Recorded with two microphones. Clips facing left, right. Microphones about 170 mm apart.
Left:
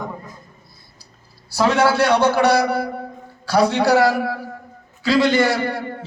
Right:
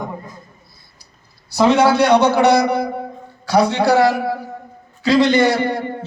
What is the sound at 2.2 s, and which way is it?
Speech, 10° left (ahead or behind).